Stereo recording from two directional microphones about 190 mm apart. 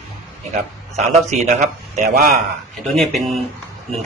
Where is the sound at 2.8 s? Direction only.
Centre (ahead or behind).